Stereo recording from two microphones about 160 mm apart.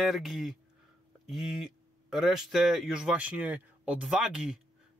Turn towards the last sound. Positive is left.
turn(degrees=-5)  # may be behind; listen again after turning